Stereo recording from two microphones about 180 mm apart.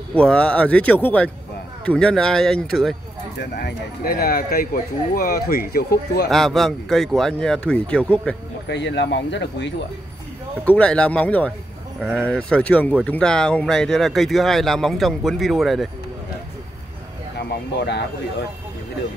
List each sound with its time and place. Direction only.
0.1 s speech: 5° left (ahead or behind)
3.3 s speech: 65° left (ahead or behind)
6.3 s speech: centre (ahead or behind)
8.6 s speech: 75° left (ahead or behind)
10.6 s speech: 5° left (ahead or behind)
17.5 s speech: 70° left (ahead or behind)